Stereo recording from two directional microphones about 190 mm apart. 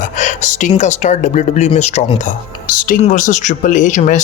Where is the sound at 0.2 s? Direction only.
40° left (ahead or behind).